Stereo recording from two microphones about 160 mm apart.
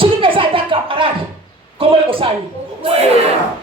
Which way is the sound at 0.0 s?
35° right (ahead or behind).